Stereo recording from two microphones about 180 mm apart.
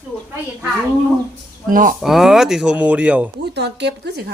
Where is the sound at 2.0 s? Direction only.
Centre (ahead or behind).